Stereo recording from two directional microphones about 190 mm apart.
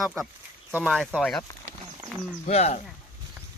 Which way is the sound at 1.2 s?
5° left (ahead or behind).